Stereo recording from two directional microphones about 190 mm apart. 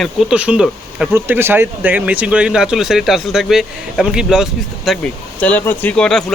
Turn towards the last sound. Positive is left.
turn(degrees=5)  # may be behind; listen again after turning